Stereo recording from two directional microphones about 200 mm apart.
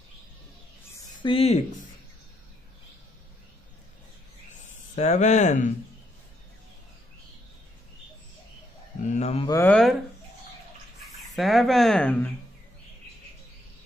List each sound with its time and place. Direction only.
1.2 s speech: 30° left (ahead or behind)
4.6 s speech: 35° left (ahead or behind)
9.0 s speech: 35° left (ahead or behind)
9.5 s speech: 10° left (ahead or behind)
11.0 s speech: centre (ahead or behind)